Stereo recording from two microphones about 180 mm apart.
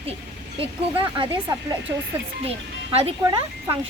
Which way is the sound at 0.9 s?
25° right (ahead or behind).